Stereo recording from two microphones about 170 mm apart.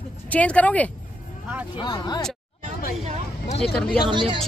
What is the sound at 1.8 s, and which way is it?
Speech, 25° left (ahead or behind).